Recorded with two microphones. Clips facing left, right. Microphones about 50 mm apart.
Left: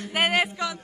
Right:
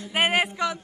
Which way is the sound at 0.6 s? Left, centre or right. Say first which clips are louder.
Right 3 dB; right.